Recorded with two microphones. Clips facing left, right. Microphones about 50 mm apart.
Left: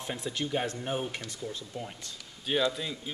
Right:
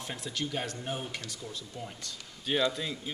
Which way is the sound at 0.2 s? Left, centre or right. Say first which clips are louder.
Left 3 dB; left.